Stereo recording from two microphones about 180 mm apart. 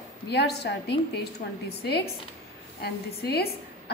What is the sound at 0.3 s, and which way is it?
Speech, 65° left (ahead or behind).